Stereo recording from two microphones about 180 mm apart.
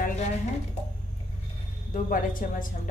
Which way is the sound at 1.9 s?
50° left (ahead or behind).